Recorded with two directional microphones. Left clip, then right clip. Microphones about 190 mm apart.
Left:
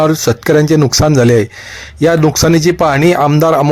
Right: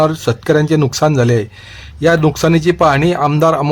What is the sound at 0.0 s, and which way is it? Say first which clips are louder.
A man's voice: left 3 dB; 15° left (ahead or behind).